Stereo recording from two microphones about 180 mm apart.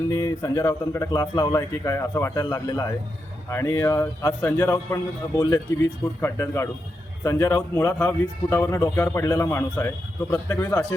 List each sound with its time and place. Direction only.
0.1 s a man's voice: 15° left (ahead or behind)